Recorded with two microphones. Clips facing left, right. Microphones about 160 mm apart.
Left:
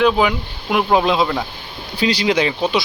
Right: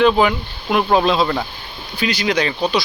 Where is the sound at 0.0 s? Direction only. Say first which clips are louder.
Right 1 dB; 5° left (ahead or behind).